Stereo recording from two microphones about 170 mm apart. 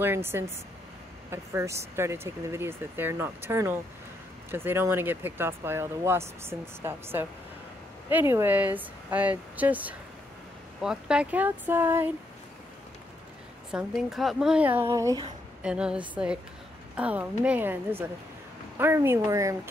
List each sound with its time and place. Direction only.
0.0 s speech: 15° right (ahead or behind)
13.7 s speech: centre (ahead or behind); by 15.2 s 20° right (ahead or behind)
15.6 s a woman's voice: 5° right (ahead or behind)